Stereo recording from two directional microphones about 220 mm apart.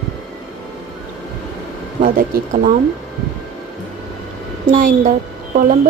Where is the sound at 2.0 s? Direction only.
40° right (ahead or behind).